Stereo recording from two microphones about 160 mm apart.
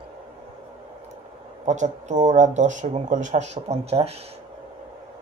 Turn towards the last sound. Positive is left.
turn(degrees=-40)  # may be behind; listen again after turning